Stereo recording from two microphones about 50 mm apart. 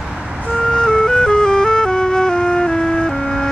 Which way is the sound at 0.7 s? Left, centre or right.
Centre.